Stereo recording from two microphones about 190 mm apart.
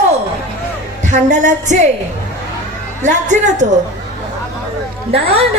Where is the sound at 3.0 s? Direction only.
40° right (ahead or behind).